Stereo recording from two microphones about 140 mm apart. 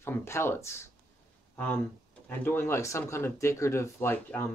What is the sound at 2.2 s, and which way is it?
Speech, 15° left (ahead or behind).